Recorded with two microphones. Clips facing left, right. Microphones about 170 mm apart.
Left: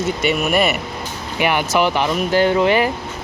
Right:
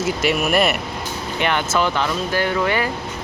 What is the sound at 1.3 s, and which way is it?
Speech, 10° left (ahead or behind).